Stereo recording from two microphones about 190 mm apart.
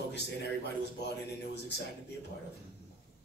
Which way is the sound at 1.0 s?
60° left (ahead or behind).